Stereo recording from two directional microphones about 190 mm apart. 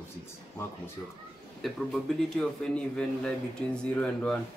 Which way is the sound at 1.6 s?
Centre (ahead or behind).